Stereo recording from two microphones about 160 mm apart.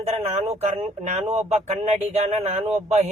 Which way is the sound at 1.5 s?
45° right (ahead or behind).